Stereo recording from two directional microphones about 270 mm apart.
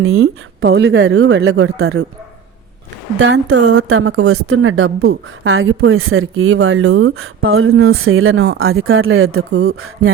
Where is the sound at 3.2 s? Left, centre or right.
Right.